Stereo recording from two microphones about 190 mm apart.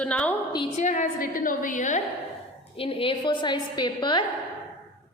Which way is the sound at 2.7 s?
30° left (ahead or behind).